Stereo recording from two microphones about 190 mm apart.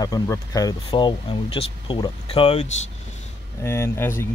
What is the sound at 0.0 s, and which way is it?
Speech, 20° left (ahead or behind).